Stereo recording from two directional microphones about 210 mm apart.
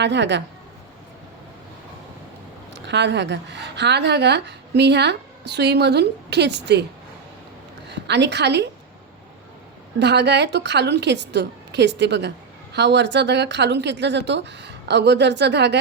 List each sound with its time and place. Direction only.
0.0 s speech: 55° right (ahead or behind)
2.8 s a woman's voice: 55° right (ahead or behind)
7.9 s a woman's voice: 55° right (ahead or behind)
10.0 s speech: 55° right (ahead or behind)